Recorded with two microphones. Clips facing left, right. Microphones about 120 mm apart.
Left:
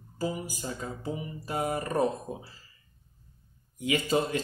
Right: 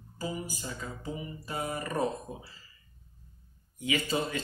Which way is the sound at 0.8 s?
40° left (ahead or behind).